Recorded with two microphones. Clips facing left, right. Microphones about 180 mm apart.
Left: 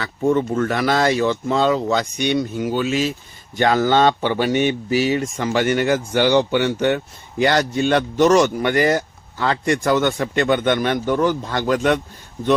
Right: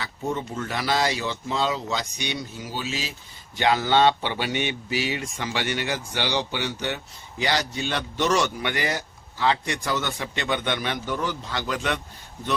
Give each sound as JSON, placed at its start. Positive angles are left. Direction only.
{"t": 0.0, "sound": "speech", "side_deg": 55}